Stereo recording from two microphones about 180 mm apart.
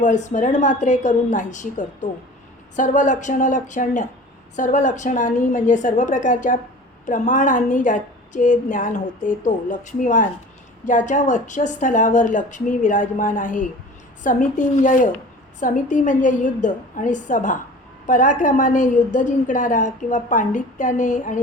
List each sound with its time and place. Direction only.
0.0 s a woman's voice: 40° left (ahead or behind)